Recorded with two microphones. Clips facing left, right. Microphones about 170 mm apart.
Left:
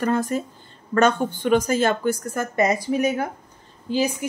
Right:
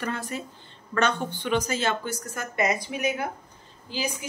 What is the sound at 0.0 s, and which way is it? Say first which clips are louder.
A woman's voice: left 9 dB; 45° left (ahead or behind).